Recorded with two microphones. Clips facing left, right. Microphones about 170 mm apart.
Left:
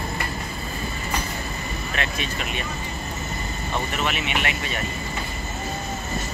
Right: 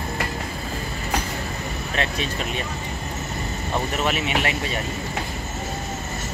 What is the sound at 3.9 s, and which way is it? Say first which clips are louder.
Speech: right 4 dB; 35° right (ahead or behind).